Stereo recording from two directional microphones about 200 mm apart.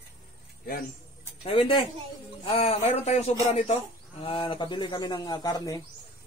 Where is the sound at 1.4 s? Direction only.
25° left (ahead or behind).